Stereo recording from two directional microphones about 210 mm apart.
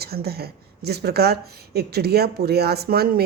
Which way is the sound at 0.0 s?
50° right (ahead or behind).